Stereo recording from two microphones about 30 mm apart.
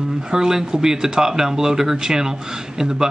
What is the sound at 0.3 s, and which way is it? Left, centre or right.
Speech, centre.